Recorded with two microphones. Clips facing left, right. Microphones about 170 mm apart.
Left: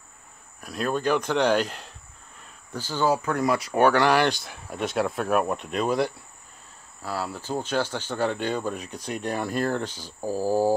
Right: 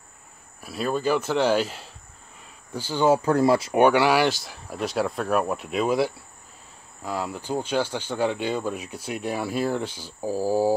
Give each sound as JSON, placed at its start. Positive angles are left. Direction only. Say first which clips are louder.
{"t": 0.6, "sound": "speech", "louder": "right 1 dB", "side_deg": -5}
{"t": 3.1, "sound": "speech", "louder": "right 5 dB", "side_deg": -30}
{"t": 3.8, "sound": "speech", "louder": "even", "side_deg": -10}